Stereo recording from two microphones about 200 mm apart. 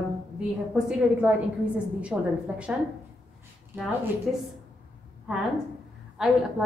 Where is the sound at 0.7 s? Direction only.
5° right (ahead or behind).